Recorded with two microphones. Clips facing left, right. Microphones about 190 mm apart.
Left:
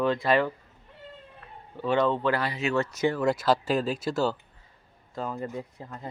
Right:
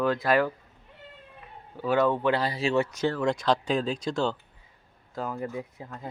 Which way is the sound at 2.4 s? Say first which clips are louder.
Right 2 dB; 30° right (ahead or behind).